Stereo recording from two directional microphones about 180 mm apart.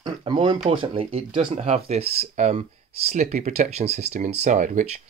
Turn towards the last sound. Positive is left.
turn(degrees=-45)  # may be behind; listen again after turning